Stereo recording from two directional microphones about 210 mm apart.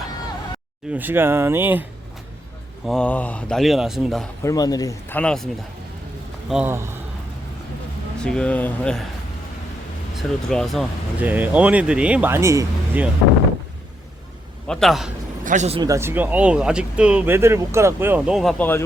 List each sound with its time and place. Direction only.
0.9 s speech: 10° right (ahead or behind)
2.8 s speech: 5° left (ahead or behind)
4.4 s speech: 20° left (ahead or behind)
6.5 s speech: 10° right (ahead or behind)
8.2 s speech: 5° left (ahead or behind)
10.2 s speech: centre (ahead or behind)
14.7 s speech: centre (ahead or behind)
15.4 s speech: 35° right (ahead or behind)
15.8 s speech: 15° right (ahead or behind); by 18.8 s 5° left (ahead or behind)